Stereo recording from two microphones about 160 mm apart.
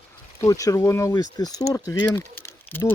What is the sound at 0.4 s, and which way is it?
Speech, 20° left (ahead or behind).